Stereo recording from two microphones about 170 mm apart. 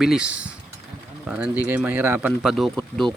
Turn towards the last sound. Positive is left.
turn(degrees=0)  # may be behind; listen again after turning